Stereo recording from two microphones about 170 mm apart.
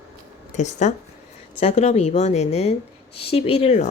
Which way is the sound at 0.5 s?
45° left (ahead or behind).